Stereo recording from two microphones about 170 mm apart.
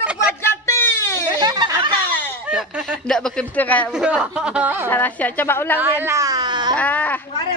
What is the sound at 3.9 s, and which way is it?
Speech, 5° right (ahead or behind).